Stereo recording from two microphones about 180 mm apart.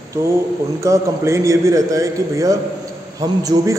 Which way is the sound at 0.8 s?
15° right (ahead or behind).